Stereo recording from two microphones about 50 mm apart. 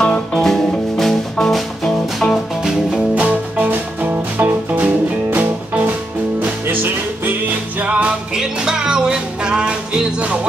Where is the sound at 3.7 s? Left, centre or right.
Right.